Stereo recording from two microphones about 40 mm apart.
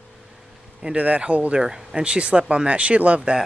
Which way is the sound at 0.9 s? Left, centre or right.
Right.